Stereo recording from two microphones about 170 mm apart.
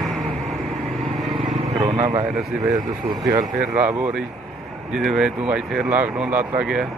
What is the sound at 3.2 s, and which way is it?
Speech, 20° right (ahead or behind).